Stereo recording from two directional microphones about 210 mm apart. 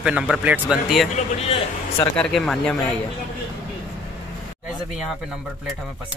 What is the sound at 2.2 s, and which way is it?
Speech, centre (ahead or behind).